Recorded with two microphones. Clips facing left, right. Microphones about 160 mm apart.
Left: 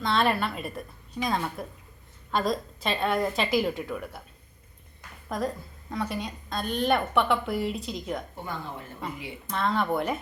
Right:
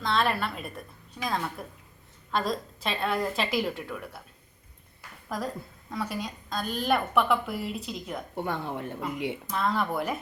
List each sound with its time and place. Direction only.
0.0 s a woman's voice: centre (ahead or behind)
5.9 s a woman's voice: centre (ahead or behind)
8.4 s speech: 65° right (ahead or behind)
9.5 s a woman's voice: 5° right (ahead or behind)